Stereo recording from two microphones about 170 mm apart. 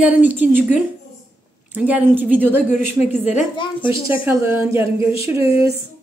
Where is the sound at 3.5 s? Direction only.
30° left (ahead or behind).